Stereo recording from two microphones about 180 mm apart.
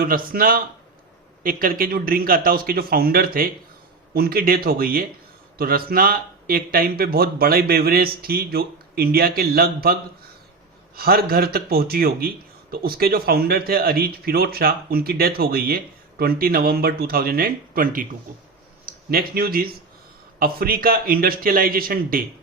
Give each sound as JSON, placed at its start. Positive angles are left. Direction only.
{"t": 0.0, "sound": "speech", "side_deg": -55}
{"t": 19.1, "sound": "speech", "side_deg": -55}